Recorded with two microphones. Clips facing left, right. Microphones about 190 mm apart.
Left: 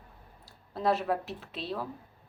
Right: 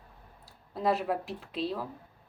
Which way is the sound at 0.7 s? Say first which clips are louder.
Even; centre (ahead or behind).